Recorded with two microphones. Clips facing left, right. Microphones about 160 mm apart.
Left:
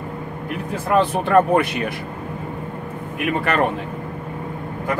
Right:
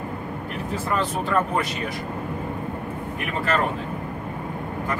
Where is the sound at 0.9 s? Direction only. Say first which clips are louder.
Left 8 dB; 65° left (ahead or behind).